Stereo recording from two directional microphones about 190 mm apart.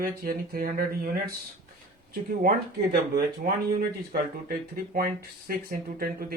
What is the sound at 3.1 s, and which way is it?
Speech, 50° right (ahead or behind).